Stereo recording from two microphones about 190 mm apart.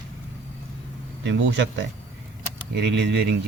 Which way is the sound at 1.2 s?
70° right (ahead or behind).